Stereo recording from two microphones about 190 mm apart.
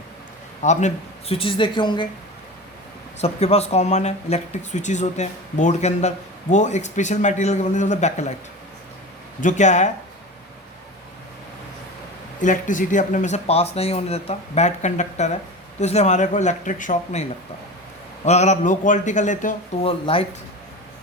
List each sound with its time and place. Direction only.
0.6 s speech: 40° left (ahead or behind)
3.2 s speech: 35° left (ahead or behind)
9.4 s speech: 40° left (ahead or behind)
12.4 s speech: 40° left (ahead or behind)
18.3 s speech: 35° left (ahead or behind)
19.8 s speech: 30° left (ahead or behind)